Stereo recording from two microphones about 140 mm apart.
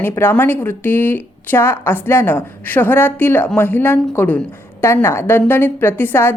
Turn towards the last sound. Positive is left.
turn(degrees=15)  # may be behind; listen again after turning